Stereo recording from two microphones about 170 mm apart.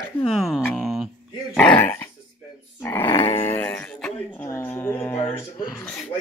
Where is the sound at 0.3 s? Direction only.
Centre (ahead or behind).